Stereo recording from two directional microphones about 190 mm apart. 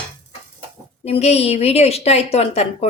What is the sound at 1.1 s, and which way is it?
Speech, 35° left (ahead or behind).